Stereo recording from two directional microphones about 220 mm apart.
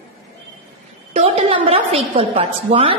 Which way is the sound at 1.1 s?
30° right (ahead or behind).